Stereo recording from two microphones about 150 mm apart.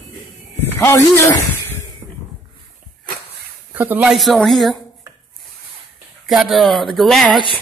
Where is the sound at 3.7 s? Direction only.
10° right (ahead or behind).